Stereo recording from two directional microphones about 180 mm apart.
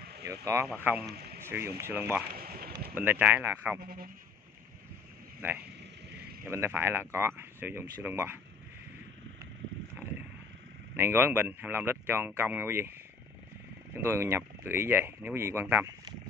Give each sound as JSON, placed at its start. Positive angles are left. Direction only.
{"t": 0.0, "sound": "a sound", "side_deg": -65}
{"t": 0.3, "sound": "speech", "side_deg": -15}
{"t": 1.1, "sound": "a sound", "side_deg": -60}
{"t": 1.4, "sound": "speech", "side_deg": -15}
{"t": 2.3, "sound": "speech", "side_deg": -55}
{"t": 2.9, "sound": "speech", "side_deg": -10}
{"t": 3.8, "sound": "speech", "side_deg": -55}
{"t": 5.4, "sound": "speech", "side_deg": -10}
{"t": 11.0, "sound": "speech", "side_deg": -10}
{"t": 13.9, "sound": "speech", "side_deg": -15}